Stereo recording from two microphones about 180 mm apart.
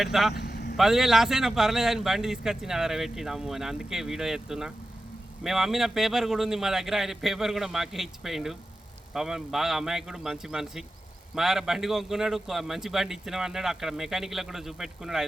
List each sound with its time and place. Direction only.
0.0 s a man's voice: centre (ahead or behind)
0.3 s vehicle: 60° left (ahead or behind)
0.8 s a man's voice: centre (ahead or behind)